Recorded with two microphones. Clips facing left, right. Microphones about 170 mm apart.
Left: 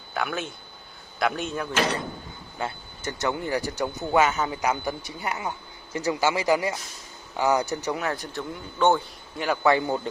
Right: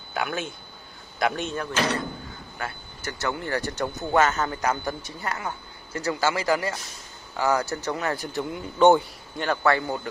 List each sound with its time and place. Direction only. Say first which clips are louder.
0.1 s speech: even; centre (ahead or behind)
2.6 s speech: left 3 dB; 20° left (ahead or behind)
8.0 s speech: right 1 dB; centre (ahead or behind)
8.3 s a man's voice: right 4 dB; 15° right (ahead or behind)
9.4 s speech: left 1 dB; 10° left (ahead or behind)